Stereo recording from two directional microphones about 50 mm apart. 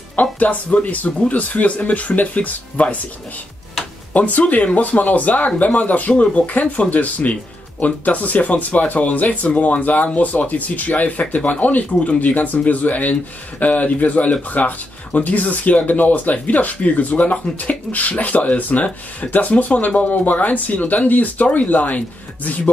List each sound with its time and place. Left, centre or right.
0.1 s speech: left
4.2 s speech: left